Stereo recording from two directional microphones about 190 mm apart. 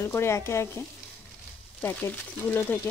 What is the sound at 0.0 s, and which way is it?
Speech, 15° left (ahead or behind).